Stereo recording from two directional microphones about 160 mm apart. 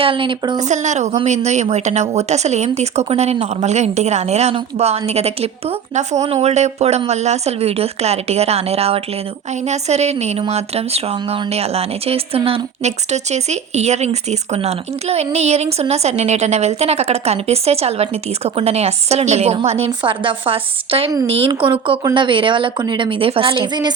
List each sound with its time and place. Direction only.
0.0 s a woman's voice: 30° right (ahead or behind)
0.6 s a woman's voice: 50° right (ahead or behind); by 23.9 s 30° right (ahead or behind)